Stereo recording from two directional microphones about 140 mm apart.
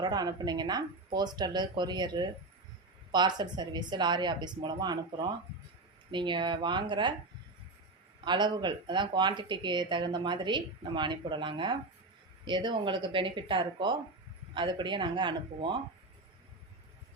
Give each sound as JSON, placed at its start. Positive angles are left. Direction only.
{"t": 0.0, "sound": "speech", "side_deg": -30}
{"t": 8.2, "sound": "speech", "side_deg": -35}